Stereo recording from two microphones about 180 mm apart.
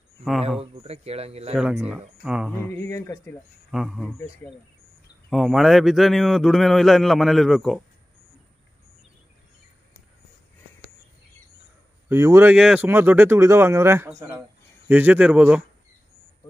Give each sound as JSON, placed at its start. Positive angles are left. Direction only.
{"t": 0.2, "sound": "a man's voice", "side_deg": -5}
{"t": 0.6, "sound": "speech", "side_deg": -35}
{"t": 1.5, "sound": "a man's voice", "side_deg": -5}
{"t": 2.7, "sound": "speech", "side_deg": 10}
{"t": 3.7, "sound": "a man's voice", "side_deg": 0}
{"t": 4.2, "sound": "speech", "side_deg": 10}
{"t": 5.3, "sound": "a man's voice", "side_deg": 0}
{"t": 12.1, "sound": "speech", "side_deg": -15}